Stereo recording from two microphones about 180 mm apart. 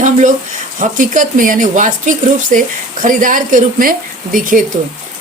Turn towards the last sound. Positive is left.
turn(degrees=-50)  # may be behind; listen again after turning